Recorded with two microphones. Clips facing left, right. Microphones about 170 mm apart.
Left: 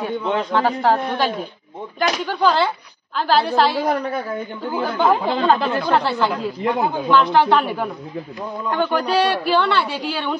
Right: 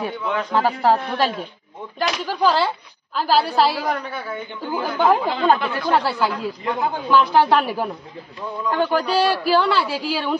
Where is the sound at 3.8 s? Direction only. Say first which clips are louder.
Left 4 dB; 40° left (ahead or behind).